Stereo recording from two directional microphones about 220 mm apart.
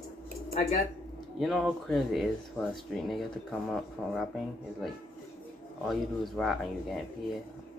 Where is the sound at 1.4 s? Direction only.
Centre (ahead or behind).